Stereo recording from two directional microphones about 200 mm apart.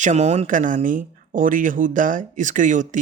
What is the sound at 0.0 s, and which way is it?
Speech, 35° right (ahead or behind).